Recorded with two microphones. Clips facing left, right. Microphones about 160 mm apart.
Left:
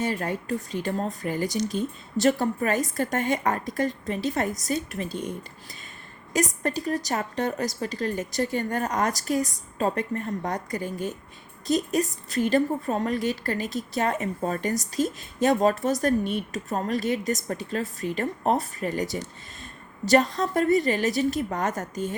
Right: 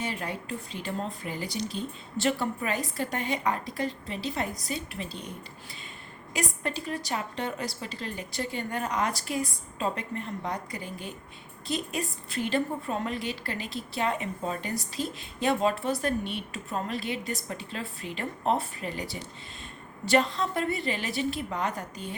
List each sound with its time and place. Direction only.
0.0 s a woman's voice: 45° left (ahead or behind)
6.3 s a woman's voice: 45° left (ahead or behind)